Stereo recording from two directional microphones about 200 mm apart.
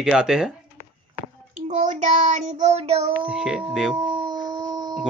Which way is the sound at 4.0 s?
25° right (ahead or behind).